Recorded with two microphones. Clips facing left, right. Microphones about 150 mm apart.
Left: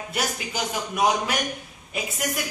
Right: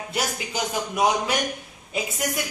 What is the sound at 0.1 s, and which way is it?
Speech, 25° right (ahead or behind).